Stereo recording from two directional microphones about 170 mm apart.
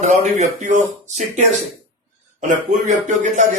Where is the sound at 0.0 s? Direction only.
45° right (ahead or behind).